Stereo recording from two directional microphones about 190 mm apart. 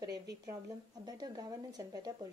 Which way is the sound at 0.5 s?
20° right (ahead or behind).